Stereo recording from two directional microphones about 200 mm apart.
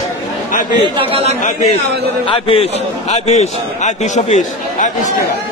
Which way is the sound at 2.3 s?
30° left (ahead or behind).